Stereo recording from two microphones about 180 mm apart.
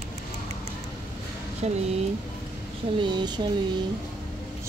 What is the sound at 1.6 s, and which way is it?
Speech, 35° right (ahead or behind).